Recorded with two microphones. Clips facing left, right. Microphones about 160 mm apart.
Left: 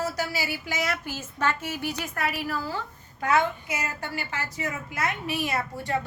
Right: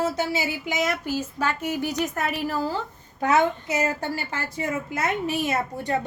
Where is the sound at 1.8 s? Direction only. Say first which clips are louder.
Right 6 dB; 45° right (ahead or behind).